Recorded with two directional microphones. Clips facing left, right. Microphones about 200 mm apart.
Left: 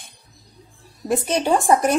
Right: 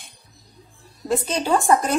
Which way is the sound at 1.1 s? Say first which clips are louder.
Left 2 dB; 20° left (ahead or behind).